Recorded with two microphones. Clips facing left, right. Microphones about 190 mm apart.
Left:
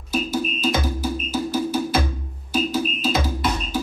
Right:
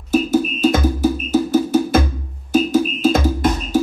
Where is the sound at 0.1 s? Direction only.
50° right (ahead or behind).